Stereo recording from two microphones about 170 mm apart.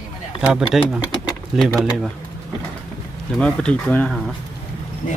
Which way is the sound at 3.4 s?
5° left (ahead or behind).